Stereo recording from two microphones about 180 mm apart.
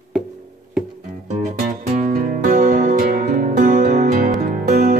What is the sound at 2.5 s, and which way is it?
Music, 50° right (ahead or behind).